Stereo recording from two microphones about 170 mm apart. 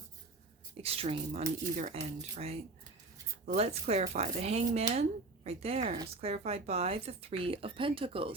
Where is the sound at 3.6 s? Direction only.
40° right (ahead or behind).